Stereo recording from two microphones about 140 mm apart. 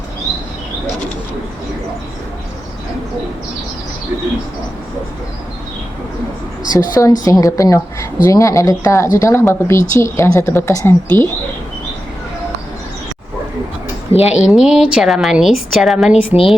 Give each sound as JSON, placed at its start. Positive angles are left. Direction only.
{"t": 6.7, "sound": "speech", "side_deg": 25}
{"t": 14.1, "sound": "a woman's voice", "side_deg": 45}
{"t": 14.3, "sound": "a woman's voice", "side_deg": -5}